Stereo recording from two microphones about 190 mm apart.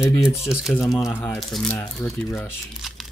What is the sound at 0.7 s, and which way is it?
Speech, centre (ahead or behind).